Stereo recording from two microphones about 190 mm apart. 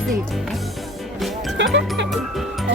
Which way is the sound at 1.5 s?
70° right (ahead or behind).